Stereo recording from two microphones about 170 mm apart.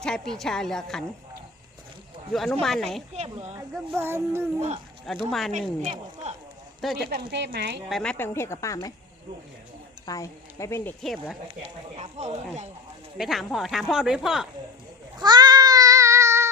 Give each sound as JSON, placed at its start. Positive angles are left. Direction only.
{"t": 0.0, "sound": "speech", "side_deg": 5}
{"t": 2.3, "sound": "speech", "side_deg": 5}
{"t": 3.9, "sound": "child singing", "side_deg": -15}
{"t": 5.1, "sound": "speech", "side_deg": 0}
{"t": 5.5, "sound": "a woman's voice", "side_deg": -40}
{"t": 7.1, "sound": "speech", "side_deg": -80}
{"t": 7.9, "sound": "speech", "side_deg": 0}
{"t": 8.2, "sound": "a woman's voice", "side_deg": 15}
{"t": 10.1, "sound": "speech", "side_deg": 20}
{"t": 11.0, "sound": "speech", "side_deg": 0}
{"t": 11.6, "sound": "speech", "side_deg": -40}
{"t": 13.1, "sound": "speech", "side_deg": 0}
{"t": 15.2, "sound": "cat", "side_deg": -25}